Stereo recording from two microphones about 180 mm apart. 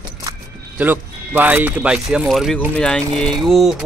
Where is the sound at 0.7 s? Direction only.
10° right (ahead or behind).